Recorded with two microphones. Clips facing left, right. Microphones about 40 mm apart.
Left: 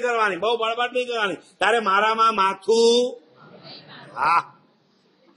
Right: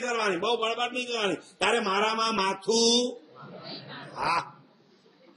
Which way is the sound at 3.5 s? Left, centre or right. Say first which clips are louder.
Right 3 dB; centre.